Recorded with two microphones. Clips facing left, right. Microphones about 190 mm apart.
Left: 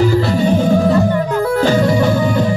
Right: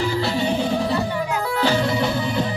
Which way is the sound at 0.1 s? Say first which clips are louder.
Left 8 dB; 45° left (ahead or behind).